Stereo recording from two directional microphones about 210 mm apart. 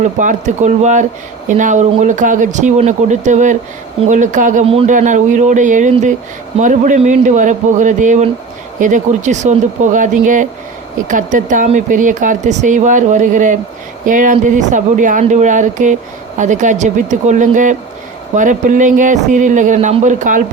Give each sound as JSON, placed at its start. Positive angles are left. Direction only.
{"t": 0.0, "sound": "speech", "side_deg": -35}